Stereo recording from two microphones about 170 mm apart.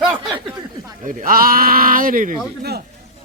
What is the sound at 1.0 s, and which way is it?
Speech, 55° right (ahead or behind).